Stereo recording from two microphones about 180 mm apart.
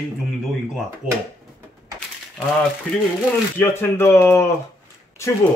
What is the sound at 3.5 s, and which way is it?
Speech, 10° left (ahead or behind).